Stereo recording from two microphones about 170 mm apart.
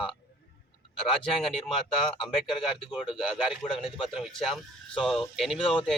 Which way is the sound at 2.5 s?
30° left (ahead or behind).